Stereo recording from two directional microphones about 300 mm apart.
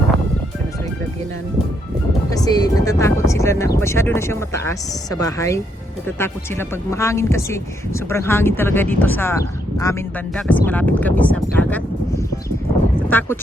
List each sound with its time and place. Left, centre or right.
2.3 s speech: centre
13.1 s speech: centre